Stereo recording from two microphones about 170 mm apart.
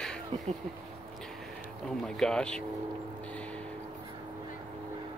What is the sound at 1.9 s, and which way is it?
Speech, centre (ahead or behind).